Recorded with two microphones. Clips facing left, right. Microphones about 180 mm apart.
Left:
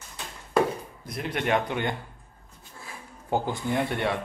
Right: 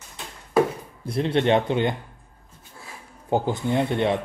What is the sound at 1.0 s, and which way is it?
Speech, 30° right (ahead or behind).